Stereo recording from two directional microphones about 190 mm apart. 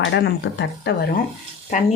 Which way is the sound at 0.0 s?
65° left (ahead or behind).